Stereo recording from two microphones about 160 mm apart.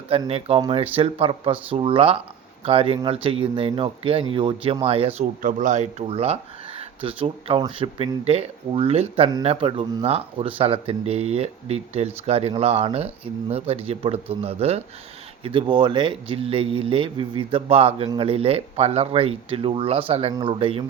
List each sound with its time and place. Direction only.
0.1 s speech: 40° right (ahead or behind)
5.4 s speech: 55° right (ahead or behind); by 20.8 s 35° right (ahead or behind)